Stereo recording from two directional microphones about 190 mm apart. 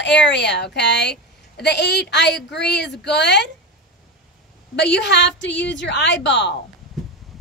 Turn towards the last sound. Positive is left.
turn(degrees=65)  # may be behind; listen again after turning